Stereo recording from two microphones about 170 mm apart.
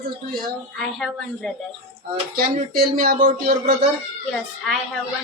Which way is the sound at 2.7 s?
60° right (ahead or behind).